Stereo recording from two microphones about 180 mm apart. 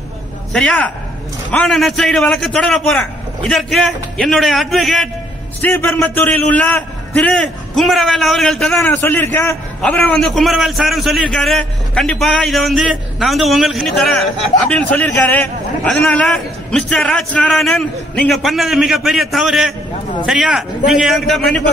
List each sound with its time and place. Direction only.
0.5 s a man's voice: 5° left (ahead or behind)